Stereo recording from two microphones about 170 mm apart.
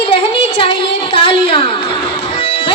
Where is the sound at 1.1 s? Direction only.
30° left (ahead or behind).